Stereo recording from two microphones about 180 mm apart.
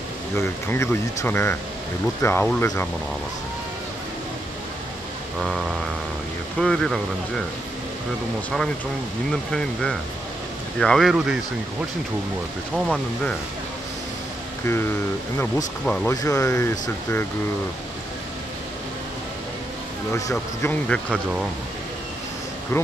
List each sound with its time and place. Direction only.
0.4 s speech: 15° left (ahead or behind)
6.6 s speech: 5° left (ahead or behind)
10.8 s speech: centre (ahead or behind)
12.7 s speech: 5° right (ahead or behind)
15.3 s speech: 5° left (ahead or behind)
16.1 s speech: 20° left (ahead or behind)
20.2 s speech: 20° left (ahead or behind)
20.9 s speech: centre (ahead or behind)